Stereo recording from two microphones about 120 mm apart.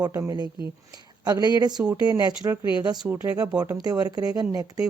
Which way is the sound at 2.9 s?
10° right (ahead or behind).